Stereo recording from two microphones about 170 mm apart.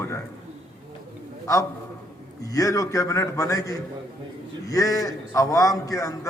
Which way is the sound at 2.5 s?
20° left (ahead or behind).